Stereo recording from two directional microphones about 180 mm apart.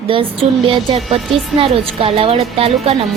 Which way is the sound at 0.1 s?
30° right (ahead or behind).